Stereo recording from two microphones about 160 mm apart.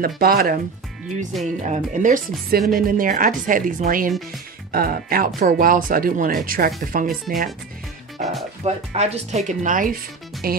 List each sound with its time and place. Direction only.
0.0 s speech: 70° right (ahead or behind)
1.6 s speech: 50° right (ahead or behind)
8.2 s speech: centre (ahead or behind)
8.6 s speech: 40° right (ahead or behind)
10.4 s speech: 70° right (ahead or behind)